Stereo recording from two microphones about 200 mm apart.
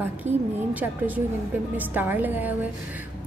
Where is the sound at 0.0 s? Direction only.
10° right (ahead or behind).